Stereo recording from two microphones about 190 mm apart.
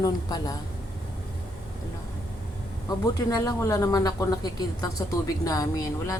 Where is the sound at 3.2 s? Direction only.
20° left (ahead or behind).